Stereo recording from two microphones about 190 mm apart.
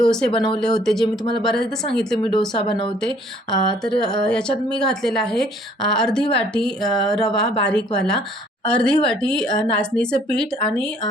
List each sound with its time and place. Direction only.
0.3 s speech: 25° left (ahead or behind)
0.6 s a woman's voice: 5° left (ahead or behind)